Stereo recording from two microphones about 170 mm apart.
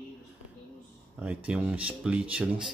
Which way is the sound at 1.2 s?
5° right (ahead or behind).